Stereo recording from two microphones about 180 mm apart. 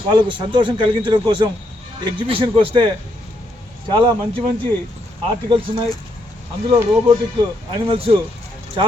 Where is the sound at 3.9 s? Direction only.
25° right (ahead or behind).